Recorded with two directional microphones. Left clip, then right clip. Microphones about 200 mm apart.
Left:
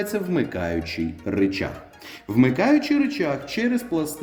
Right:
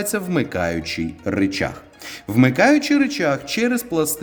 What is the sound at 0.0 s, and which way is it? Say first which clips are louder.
Speech: right 2 dB; 60° right (ahead or behind).